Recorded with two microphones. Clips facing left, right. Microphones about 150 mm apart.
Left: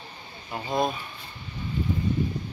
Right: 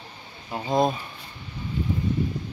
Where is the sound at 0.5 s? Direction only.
20° right (ahead or behind).